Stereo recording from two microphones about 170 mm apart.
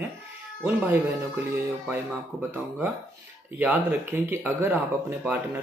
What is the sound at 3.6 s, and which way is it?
Speech, 10° right (ahead or behind).